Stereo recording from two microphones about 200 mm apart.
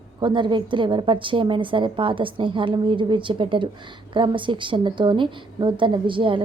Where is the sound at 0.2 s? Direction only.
25° right (ahead or behind).